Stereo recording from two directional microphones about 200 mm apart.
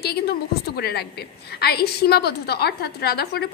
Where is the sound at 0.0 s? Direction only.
50° left (ahead or behind).